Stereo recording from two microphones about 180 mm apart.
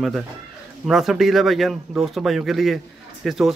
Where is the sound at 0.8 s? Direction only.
Centre (ahead or behind).